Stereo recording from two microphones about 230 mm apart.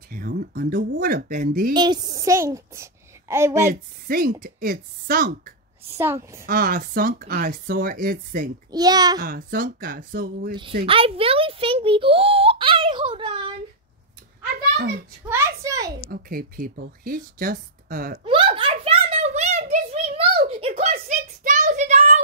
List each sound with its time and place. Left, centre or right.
0.1 s speech: right
1.7 s a child's voice: centre
4.1 s speech: right
5.9 s a child's voice: centre
6.4 s speech: right
8.7 s a child's voice: centre
9.2 s speech: right
10.5 s a child's voice: right
15.2 s a child's voice: centre
16.1 s speech: right
18.2 s a sound: right